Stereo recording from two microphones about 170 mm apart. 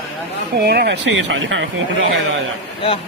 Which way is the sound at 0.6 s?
70° right (ahead or behind).